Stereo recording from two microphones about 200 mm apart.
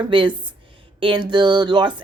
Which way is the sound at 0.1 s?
25° right (ahead or behind).